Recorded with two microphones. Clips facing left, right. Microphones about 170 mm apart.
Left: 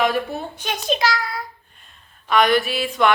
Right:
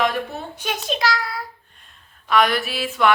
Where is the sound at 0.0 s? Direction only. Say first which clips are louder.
Left 2 dB; 5° left (ahead or behind).